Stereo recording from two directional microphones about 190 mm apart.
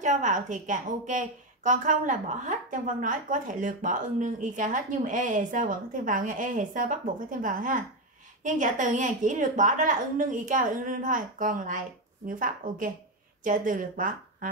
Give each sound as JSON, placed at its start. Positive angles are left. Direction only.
{"t": 0.0, "sound": "a woman's voice", "side_deg": -40}